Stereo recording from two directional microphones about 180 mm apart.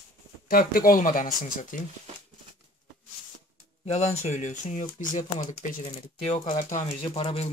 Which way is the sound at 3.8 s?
40° left (ahead or behind).